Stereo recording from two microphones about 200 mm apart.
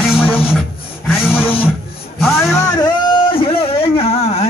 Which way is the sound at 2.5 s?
15° left (ahead or behind).